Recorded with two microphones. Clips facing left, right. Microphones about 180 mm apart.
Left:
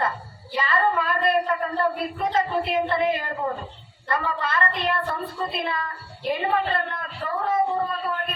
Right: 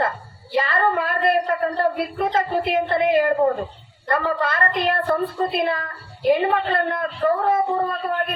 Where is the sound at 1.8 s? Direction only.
35° right (ahead or behind).